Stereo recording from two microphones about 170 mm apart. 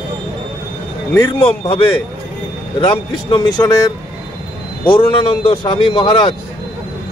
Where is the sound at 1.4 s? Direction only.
35° left (ahead or behind).